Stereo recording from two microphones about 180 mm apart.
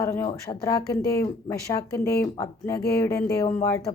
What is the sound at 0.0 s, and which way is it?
Speech, 15° left (ahead or behind).